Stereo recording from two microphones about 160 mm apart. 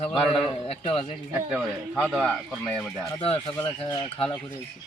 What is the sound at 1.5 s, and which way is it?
Speech, centre (ahead or behind).